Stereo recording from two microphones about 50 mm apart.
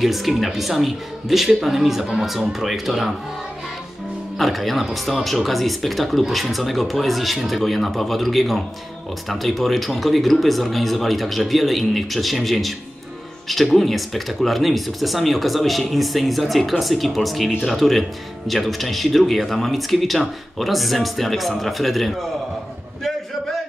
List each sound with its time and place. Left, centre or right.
0.0 s speech: centre
4.4 s speech: centre